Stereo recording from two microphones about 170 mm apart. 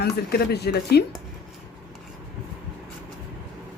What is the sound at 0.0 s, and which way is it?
Speech, 65° left (ahead or behind).